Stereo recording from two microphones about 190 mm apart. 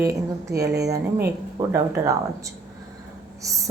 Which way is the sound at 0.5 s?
60° right (ahead or behind).